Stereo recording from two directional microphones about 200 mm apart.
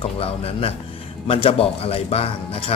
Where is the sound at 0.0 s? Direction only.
30° left (ahead or behind).